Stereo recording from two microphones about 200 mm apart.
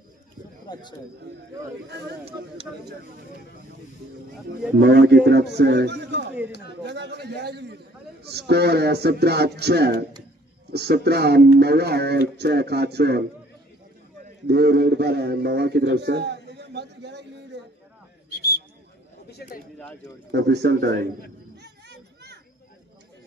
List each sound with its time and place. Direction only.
0.7 s a man's voice: 20° left (ahead or behind)
1.9 s a man's voice: 60° right (ahead or behind)
2.2 s speech: 30° right (ahead or behind)
4.7 s a man's voice: 55° right (ahead or behind)
14.2 s a sound: 55° right (ahead or behind)
18.3 s a sound: 55° left (ahead or behind)
20.2 s a man's voice: 55° right (ahead or behind)
21.5 s children playing: 55° right (ahead or behind)